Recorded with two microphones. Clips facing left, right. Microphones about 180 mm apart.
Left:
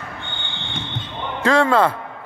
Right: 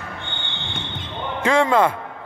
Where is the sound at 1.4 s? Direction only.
15° right (ahead or behind).